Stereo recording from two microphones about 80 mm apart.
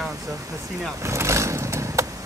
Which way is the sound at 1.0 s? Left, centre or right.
Right.